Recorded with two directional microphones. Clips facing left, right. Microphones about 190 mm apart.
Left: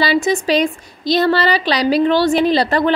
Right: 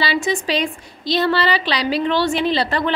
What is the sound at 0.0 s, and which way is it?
A woman's voice, 45° left (ahead or behind).